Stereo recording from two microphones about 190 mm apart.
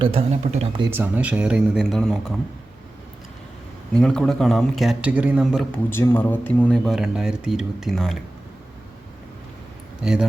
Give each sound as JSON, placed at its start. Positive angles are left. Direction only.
{"t": 0.0, "sound": "speech", "side_deg": -30}
{"t": 0.9, "sound": "speech", "side_deg": -10}
{"t": 3.9, "sound": "speech", "side_deg": 5}
{"t": 5.9, "sound": "speech", "side_deg": 10}
{"t": 10.0, "sound": "speech", "side_deg": -5}